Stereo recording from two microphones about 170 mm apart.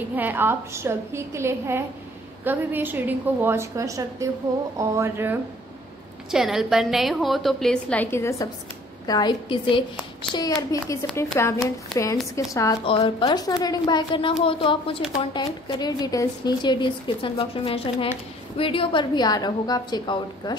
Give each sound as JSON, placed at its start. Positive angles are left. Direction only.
{"t": 0.1, "sound": "a woman's voice", "side_deg": -10}
{"t": 6.3, "sound": "a woman's voice", "side_deg": 0}
{"t": 12.8, "sound": "a woman's voice", "side_deg": 30}